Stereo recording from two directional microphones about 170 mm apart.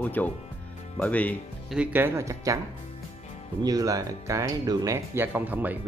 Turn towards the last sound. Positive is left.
turn(degrees=-10)  # may be behind; listen again after turning